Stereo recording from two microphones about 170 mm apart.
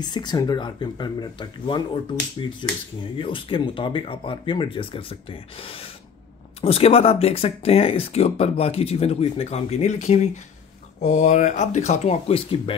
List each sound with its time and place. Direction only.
0.0 s speech: 25° left (ahead or behind)